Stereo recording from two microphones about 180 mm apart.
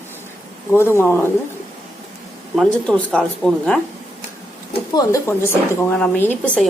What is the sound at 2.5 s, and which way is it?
A woman's voice, 5° left (ahead or behind).